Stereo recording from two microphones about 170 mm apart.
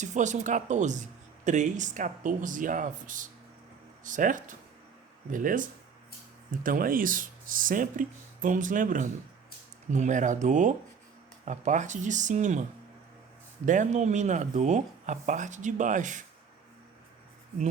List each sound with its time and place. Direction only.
0.0 s speech: 45° right (ahead or behind)
13.7 s speech: 45° right (ahead or behind)